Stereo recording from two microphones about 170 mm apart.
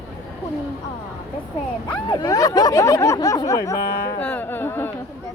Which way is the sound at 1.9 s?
25° left (ahead or behind).